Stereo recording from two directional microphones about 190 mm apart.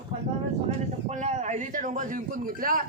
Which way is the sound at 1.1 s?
40° right (ahead or behind).